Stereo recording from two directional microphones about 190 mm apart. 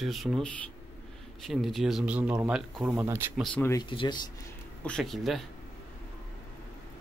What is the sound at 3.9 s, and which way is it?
Speech, 25° left (ahead or behind).